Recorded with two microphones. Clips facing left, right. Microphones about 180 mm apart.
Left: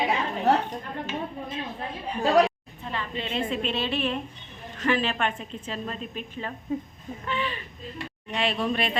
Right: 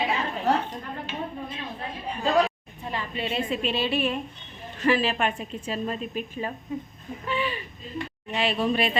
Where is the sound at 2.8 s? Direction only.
10° right (ahead or behind).